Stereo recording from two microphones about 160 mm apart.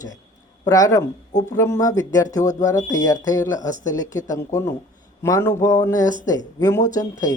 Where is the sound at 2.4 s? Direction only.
50° left (ahead or behind).